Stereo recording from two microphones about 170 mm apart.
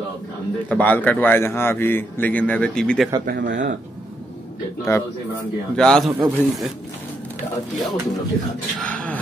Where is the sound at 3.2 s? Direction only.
80° right.